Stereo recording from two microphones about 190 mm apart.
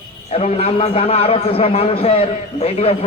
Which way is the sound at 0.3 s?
30° left (ahead or behind).